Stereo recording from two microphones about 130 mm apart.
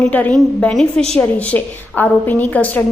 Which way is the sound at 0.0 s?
10° left (ahead or behind).